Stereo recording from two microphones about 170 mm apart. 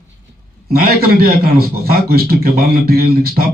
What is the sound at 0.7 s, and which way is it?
A man's voice, 60° right (ahead or behind).